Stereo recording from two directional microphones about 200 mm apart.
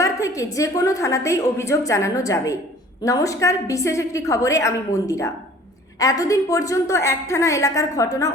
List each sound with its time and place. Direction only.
0.0 s a woman's voice: 15° left (ahead or behind)